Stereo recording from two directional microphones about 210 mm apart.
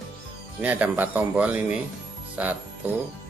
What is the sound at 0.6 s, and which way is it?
A man's voice, 10° right (ahead or behind).